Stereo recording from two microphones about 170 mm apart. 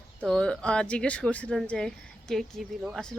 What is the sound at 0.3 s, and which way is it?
Speech, 5° left (ahead or behind).